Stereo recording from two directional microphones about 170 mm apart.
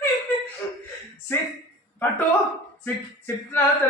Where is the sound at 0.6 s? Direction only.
15° left (ahead or behind).